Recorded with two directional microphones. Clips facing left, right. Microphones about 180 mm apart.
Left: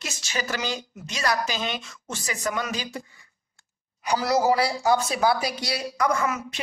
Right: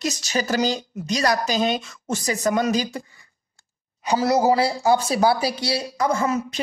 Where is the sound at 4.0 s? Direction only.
25° right (ahead or behind).